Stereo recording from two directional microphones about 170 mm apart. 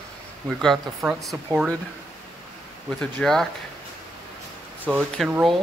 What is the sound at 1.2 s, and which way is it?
Speech, centre (ahead or behind).